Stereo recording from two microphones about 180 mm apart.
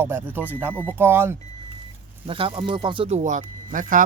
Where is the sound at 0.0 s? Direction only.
10° right (ahead or behind).